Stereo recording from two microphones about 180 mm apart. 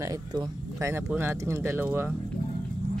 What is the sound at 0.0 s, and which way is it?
Speech, 20° right (ahead or behind).